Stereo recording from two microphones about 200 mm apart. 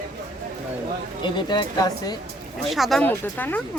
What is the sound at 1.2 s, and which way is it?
Speech, 20° left (ahead or behind).